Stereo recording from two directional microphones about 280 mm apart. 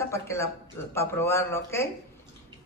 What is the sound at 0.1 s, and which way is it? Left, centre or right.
A woman's voice, centre.